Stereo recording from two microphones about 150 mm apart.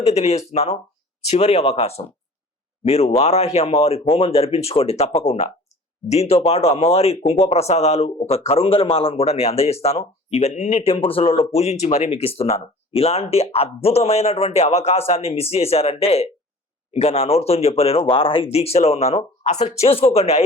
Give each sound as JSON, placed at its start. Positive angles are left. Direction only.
{"t": 0.1, "sound": "a man's voice", "side_deg": 45}